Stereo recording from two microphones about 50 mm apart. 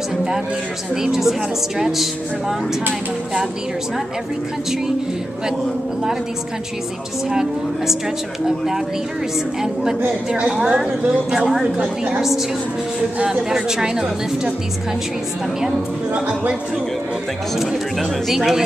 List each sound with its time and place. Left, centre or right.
1.0 s a woman's voice: centre
1.8 s music: centre
7.2 s a woman's voice: centre
10.6 s a woman's voice: centre
11.8 s a woman's voice: right
13.2 s a woman's voice: centre
18.3 s a woman's voice: centre